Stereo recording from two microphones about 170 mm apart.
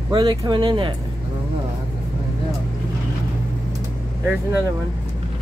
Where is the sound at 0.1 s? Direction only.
25° right (ahead or behind).